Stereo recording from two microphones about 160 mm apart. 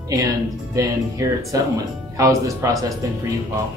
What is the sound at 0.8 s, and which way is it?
Speech, 20° right (ahead or behind).